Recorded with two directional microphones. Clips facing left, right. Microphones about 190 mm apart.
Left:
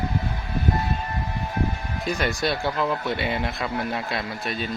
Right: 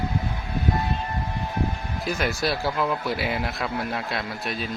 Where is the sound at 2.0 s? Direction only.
Centre (ahead or behind).